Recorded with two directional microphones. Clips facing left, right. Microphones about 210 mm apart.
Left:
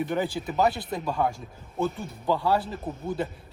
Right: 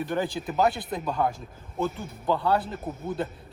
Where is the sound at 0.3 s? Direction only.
Centre (ahead or behind).